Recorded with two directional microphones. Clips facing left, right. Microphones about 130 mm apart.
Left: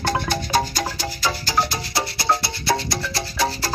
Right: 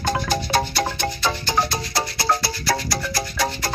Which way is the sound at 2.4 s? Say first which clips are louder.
Left 1 dB; 25° left (ahead or behind).